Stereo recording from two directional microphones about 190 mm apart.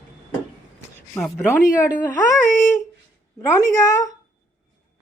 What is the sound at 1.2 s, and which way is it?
Speech, 15° left (ahead or behind).